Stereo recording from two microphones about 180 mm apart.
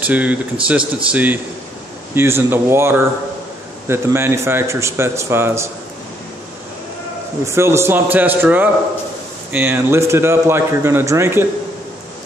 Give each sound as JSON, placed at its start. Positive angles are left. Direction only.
{"t": 0.0, "sound": "a man's voice", "side_deg": -10}
{"t": 7.4, "sound": "a man's voice", "side_deg": -15}